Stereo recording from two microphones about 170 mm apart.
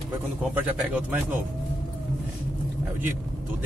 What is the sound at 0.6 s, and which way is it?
Speech, 10° right (ahead or behind).